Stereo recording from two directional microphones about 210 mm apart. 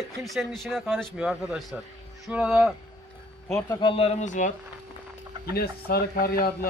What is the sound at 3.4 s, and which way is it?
Speech, 15° left (ahead or behind).